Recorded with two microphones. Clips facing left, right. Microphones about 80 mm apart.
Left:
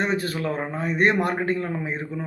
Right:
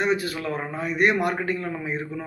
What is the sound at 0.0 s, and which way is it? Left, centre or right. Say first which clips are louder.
Speech: even; left.